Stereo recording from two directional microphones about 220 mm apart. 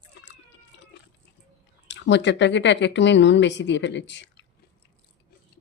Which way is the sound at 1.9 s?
55° left (ahead or behind).